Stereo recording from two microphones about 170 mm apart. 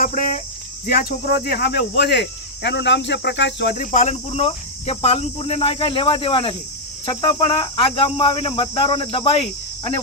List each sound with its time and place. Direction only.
0.0 s cricket: 50° left (ahead or behind)
0.9 s speech: 65° left (ahead or behind)
3.9 s speech: 40° left (ahead or behind)